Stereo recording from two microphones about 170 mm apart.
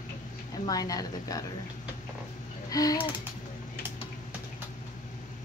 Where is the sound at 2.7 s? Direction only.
20° left (ahead or behind).